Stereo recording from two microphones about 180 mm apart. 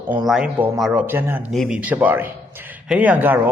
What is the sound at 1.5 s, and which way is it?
Speech, centre (ahead or behind).